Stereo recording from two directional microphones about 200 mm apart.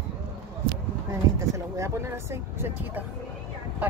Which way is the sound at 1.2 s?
15° right (ahead or behind).